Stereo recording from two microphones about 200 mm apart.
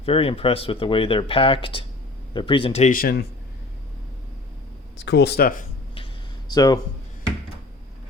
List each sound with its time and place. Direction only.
0.0 s speech: 30° left (ahead or behind)
2.9 s speech: 50° left (ahead or behind)
4.9 s speech: 60° left (ahead or behind)
6.5 s speech: 20° left (ahead or behind)